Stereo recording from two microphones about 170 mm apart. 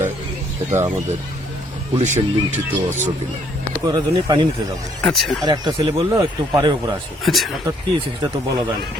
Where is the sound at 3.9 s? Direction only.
25° right (ahead or behind).